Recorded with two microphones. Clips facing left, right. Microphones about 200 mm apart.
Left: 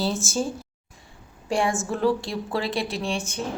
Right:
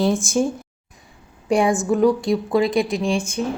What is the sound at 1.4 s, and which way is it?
A woman's voice, 15° right (ahead or behind).